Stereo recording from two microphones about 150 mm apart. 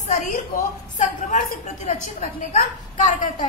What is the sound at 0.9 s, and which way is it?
A woman's voice, 55° left (ahead or behind).